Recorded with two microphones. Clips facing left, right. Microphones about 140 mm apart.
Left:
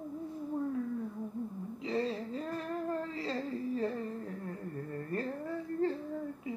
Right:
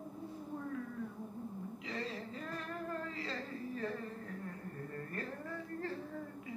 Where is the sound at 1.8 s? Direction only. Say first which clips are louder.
Left 10 dB; 30° left (ahead or behind).